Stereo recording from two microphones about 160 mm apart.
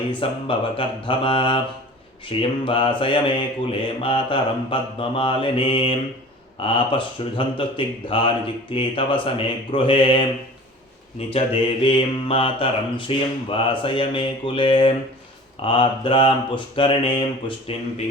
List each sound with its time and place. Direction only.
0.1 s speech: 30° left (ahead or behind)
11.3 s speech: 35° left (ahead or behind)